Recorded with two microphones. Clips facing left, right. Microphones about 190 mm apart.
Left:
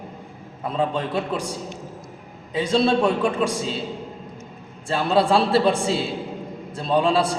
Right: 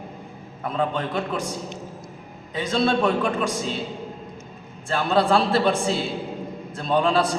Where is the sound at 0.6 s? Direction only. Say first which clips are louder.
Left 1 dB; 30° left (ahead or behind).